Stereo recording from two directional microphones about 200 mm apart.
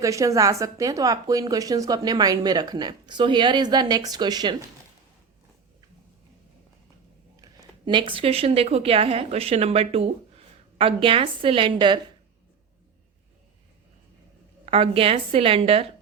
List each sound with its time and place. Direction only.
0.0 s a woman's voice: 15° right (ahead or behind)
7.4 s a woman's voice: 25° right (ahead or behind)
14.6 s a woman's voice: 30° right (ahead or behind)